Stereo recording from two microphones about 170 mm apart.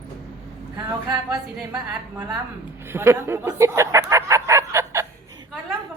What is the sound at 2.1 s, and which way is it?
A woman's voice, 15° right (ahead or behind).